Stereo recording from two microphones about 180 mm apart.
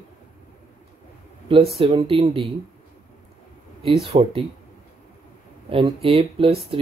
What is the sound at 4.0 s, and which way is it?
Speech, 30° right (ahead or behind).